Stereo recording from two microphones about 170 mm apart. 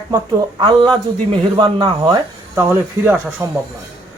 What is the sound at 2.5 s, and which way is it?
Speech, 10° right (ahead or behind).